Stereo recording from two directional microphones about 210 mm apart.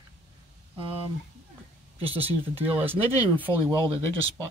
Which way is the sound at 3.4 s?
25° right (ahead or behind).